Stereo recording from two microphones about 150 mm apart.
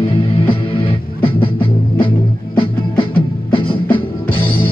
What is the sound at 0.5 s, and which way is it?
Music, 35° left (ahead or behind).